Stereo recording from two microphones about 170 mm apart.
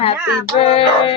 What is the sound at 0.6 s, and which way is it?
Music, 30° left (ahead or behind).